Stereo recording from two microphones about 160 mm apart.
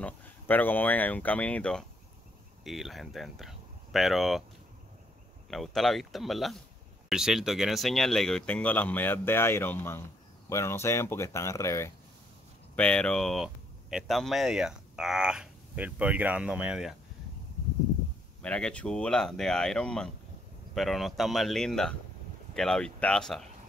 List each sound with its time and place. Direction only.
0.0 s speech: 10° left (ahead or behind)
5.5 s speech: centre (ahead or behind); by 11.9 s 20° left (ahead or behind)
12.7 s speech: 5° left (ahead or behind)
18.4 s speech: 5° left (ahead or behind)